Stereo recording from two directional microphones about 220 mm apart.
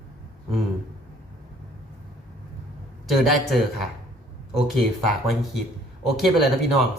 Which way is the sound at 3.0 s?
Centre (ahead or behind).